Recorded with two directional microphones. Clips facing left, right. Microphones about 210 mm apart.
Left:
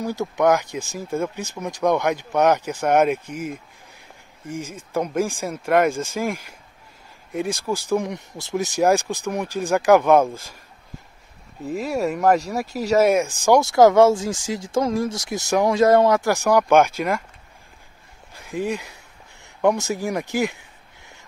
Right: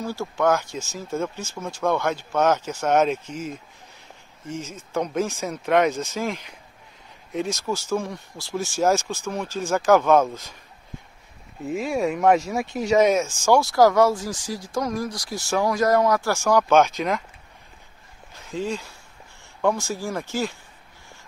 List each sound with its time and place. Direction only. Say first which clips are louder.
0.0 s speech: left 3 dB; 20° left (ahead or behind)
11.7 s speech: even; centre (ahead or behind)
18.3 s speech: left 2 dB; 15° left (ahead or behind)